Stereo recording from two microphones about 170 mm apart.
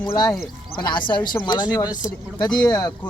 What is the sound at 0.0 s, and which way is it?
Speech, 20° left (ahead or behind).